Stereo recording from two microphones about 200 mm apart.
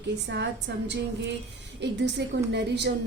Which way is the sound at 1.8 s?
60° right (ahead or behind).